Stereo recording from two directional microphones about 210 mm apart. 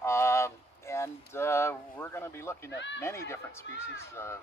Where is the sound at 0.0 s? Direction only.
15° left (ahead or behind).